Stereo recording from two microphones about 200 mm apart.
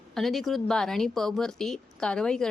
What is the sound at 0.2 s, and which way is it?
A woman's voice, centre (ahead or behind).